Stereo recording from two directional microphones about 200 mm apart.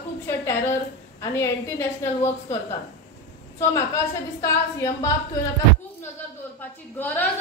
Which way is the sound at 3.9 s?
15° left (ahead or behind).